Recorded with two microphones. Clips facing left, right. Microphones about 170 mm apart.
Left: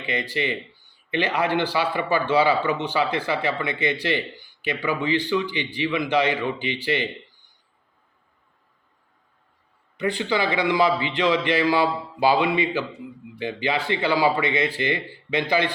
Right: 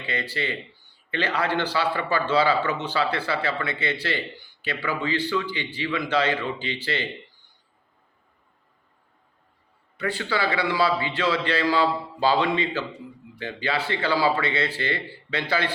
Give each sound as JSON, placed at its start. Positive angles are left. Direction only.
{"t": 0.0, "sound": "a man's voice", "side_deg": 15}
{"t": 10.0, "sound": "a man's voice", "side_deg": 15}